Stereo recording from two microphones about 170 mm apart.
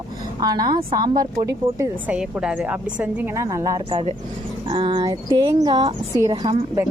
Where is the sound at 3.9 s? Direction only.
35° right (ahead or behind).